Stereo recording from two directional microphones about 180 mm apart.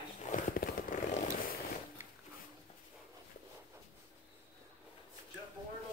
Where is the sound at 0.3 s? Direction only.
45° left (ahead or behind).